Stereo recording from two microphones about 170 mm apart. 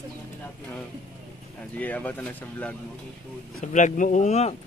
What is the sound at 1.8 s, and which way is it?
Speech, 10° left (ahead or behind).